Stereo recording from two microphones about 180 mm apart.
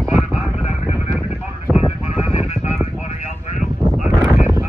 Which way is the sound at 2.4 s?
40° left (ahead or behind).